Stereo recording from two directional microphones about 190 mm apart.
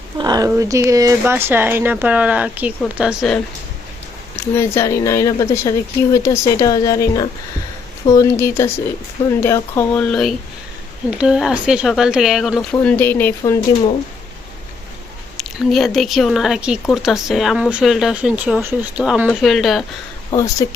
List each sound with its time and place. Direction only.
0.2 s speech: 20° right (ahead or behind); by 3.4 s centre (ahead or behind)
4.4 s speech: 15° left (ahead or behind)
15.4 s speech: centre (ahead or behind)
20.3 s speech: 15° left (ahead or behind)